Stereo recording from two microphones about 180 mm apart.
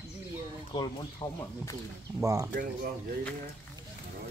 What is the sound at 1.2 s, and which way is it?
Speech, 20° left (ahead or behind).